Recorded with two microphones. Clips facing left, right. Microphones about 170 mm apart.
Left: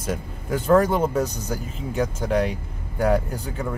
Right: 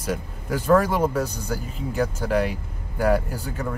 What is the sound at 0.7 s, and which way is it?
Speech, 25° left (ahead or behind).